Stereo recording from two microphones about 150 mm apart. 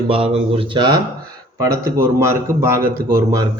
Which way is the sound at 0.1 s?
40° right (ahead or behind).